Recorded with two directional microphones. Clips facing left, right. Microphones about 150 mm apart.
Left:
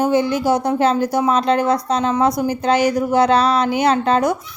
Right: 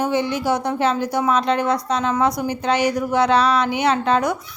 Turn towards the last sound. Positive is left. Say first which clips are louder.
# left 3 dB
turn(degrees=35)  # may be behind; listen again after turning